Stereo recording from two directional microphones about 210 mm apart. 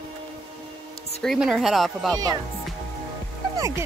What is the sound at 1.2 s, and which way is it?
Speech, centre (ahead or behind).